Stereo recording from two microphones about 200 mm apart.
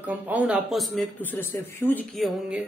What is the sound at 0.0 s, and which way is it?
Speech, 5° right (ahead or behind).